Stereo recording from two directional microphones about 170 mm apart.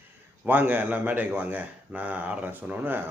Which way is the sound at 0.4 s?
10° right (ahead or behind).